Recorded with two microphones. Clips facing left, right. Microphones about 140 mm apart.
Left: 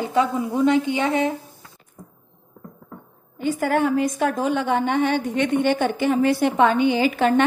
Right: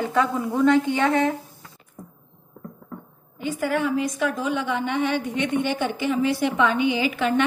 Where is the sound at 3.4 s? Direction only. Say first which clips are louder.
Left 4 dB; 45° left (ahead or behind).